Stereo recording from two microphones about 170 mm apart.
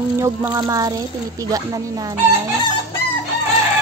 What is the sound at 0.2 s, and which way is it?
Speech, 15° right (ahead or behind).